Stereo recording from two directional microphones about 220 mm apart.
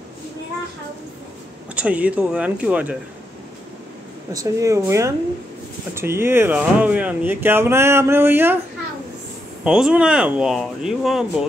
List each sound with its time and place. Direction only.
1.8 s speech: 5° right (ahead or behind)
4.3 s speech: 15° right (ahead or behind)
9.7 s speech: 5° right (ahead or behind)